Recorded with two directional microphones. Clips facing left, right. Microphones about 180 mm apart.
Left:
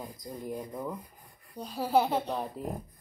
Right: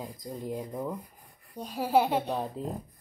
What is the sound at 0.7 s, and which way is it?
A child's voice, 15° right (ahead or behind).